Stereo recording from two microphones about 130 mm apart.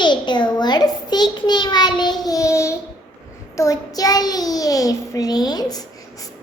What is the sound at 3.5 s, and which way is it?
Child singing, 25° left (ahead or behind).